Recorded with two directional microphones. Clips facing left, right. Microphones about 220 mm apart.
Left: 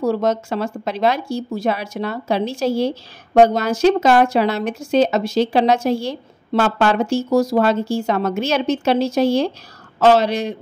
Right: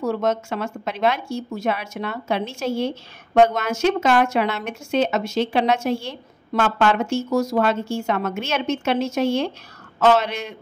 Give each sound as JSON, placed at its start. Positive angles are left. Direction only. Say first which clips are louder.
{"t": 0.0, "sound": "speech", "louder": "left 4 dB", "side_deg": 35}